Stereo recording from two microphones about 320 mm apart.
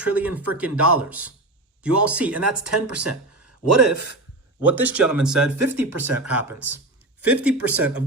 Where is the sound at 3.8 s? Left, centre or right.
Right.